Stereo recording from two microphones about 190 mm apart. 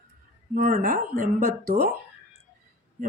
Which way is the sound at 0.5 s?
50° right (ahead or behind).